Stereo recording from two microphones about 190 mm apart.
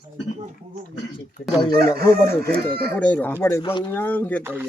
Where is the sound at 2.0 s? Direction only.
15° left (ahead or behind).